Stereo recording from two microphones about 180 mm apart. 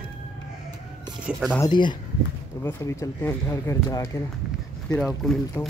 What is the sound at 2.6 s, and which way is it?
Speech, 15° left (ahead or behind).